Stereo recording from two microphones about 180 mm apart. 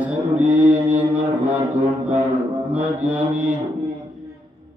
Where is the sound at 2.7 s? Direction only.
10° right (ahead or behind).